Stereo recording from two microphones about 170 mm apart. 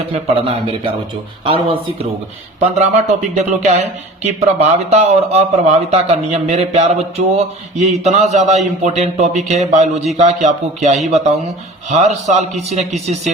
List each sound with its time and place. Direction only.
0.1 s a man's voice: 35° right (ahead or behind)
2.6 s a man's voice: 45° right (ahead or behind)